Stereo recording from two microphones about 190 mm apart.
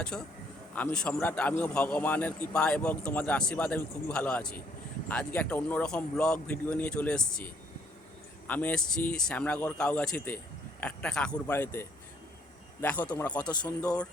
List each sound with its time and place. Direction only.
0.1 s a man's voice: 5° left (ahead or behind)
8.4 s a man's voice: 10° left (ahead or behind)
13.4 s speech: 20° left (ahead or behind)